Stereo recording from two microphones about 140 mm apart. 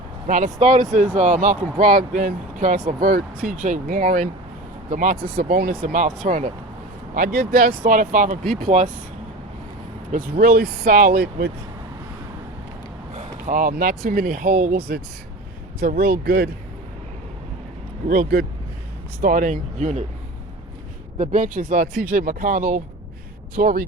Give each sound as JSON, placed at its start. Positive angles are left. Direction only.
{"t": 0.3, "sound": "speech", "side_deg": -65}
{"t": 3.0, "sound": "speech", "side_deg": -80}
{"t": 5.8, "sound": "speech", "side_deg": -65}
{"t": 7.1, "sound": "speech", "side_deg": -85}
{"t": 7.9, "sound": "speech", "side_deg": -70}
{"t": 8.7, "sound": "speech", "side_deg": -55}
{"t": 10.1, "sound": "speech", "side_deg": -90}
{"t": 13.1, "sound": "vehicle", "side_deg": -65}
{"t": 14.1, "sound": "speech", "side_deg": -90}
{"t": 18.1, "sound": "speech", "side_deg": -85}
{"t": 19.2, "sound": "speech", "side_deg": -75}
{"t": 21.2, "sound": "speech", "side_deg": -70}
{"t": 23.6, "sound": "speech", "side_deg": -80}